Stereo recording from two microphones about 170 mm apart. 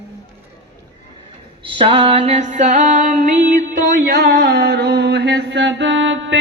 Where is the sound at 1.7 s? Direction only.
35° right (ahead or behind); by 3.6 s 50° right (ahead or behind).